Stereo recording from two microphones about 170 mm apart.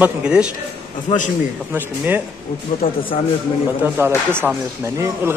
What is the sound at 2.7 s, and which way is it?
Speech, 55° left (ahead or behind).